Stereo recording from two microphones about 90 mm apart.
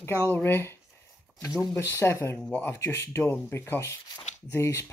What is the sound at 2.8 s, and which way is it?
Speech, 35° left (ahead or behind).